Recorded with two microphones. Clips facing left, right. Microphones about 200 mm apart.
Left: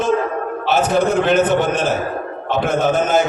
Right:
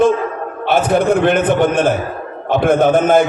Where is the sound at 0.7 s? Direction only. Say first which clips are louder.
Right 3 dB; 55° right (ahead or behind).